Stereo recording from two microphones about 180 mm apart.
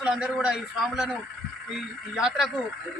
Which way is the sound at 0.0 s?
5° right (ahead or behind).